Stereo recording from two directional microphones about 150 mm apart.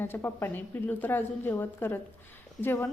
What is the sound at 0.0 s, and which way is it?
A woman's voice, 15° left (ahead or behind).